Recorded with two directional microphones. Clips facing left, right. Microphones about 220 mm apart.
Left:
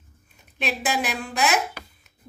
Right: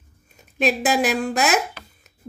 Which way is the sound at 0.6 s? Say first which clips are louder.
Right 7 dB; 45° right (ahead or behind).